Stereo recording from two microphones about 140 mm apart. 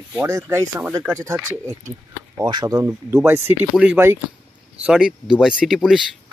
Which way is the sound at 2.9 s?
15° right (ahead or behind).